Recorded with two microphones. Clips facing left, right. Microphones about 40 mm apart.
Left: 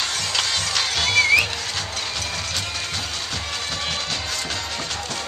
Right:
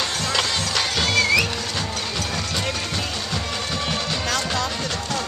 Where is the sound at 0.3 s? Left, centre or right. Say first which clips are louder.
Right 2 dB; centre.